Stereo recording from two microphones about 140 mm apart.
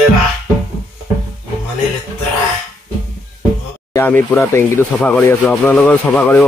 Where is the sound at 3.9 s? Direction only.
15° left (ahead or behind).